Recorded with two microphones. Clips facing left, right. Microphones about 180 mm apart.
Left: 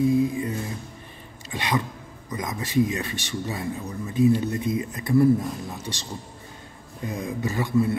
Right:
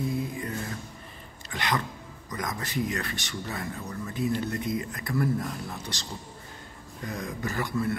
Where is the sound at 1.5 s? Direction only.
15° left (ahead or behind).